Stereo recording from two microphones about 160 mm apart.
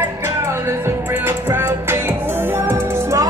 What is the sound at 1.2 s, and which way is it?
Music, 15° right (ahead or behind).